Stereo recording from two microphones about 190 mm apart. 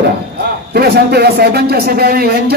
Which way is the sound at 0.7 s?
55° right (ahead or behind).